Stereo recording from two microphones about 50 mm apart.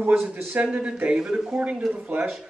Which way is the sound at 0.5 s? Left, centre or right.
Right.